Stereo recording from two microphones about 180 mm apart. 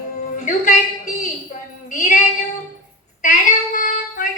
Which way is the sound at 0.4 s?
45° left (ahead or behind).